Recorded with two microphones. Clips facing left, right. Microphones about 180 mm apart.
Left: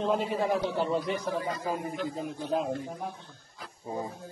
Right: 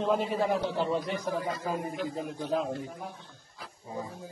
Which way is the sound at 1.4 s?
Centre (ahead or behind).